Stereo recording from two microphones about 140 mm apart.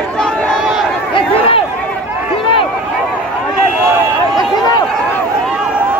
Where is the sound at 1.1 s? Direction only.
40° left (ahead or behind).